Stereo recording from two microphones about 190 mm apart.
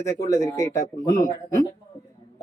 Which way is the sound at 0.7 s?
45° left (ahead or behind).